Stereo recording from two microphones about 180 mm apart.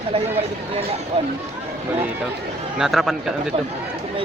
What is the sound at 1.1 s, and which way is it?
Speech, 30° right (ahead or behind).